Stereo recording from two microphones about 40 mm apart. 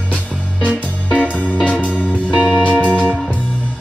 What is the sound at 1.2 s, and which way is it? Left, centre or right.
Music, left.